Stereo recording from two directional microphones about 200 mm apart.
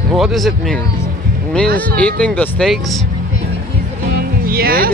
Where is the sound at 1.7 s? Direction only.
5° left (ahead or behind).